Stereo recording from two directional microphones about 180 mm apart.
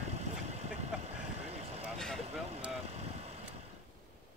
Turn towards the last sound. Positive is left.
turn(degrees=-35)  # may be behind; listen again after turning